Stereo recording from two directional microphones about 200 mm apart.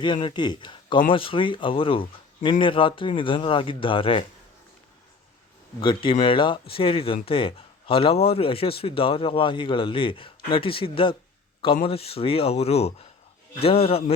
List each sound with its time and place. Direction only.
0.0 s speech: 25° left (ahead or behind)
5.8 s speech: 25° left (ahead or behind)